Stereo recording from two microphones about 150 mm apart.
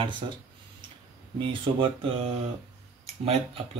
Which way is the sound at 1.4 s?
35° right (ahead or behind).